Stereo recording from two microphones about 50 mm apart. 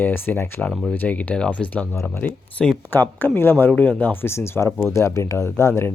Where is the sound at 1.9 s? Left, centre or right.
Left.